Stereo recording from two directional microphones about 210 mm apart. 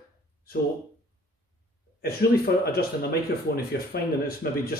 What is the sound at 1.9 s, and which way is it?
Speech, 45° left (ahead or behind).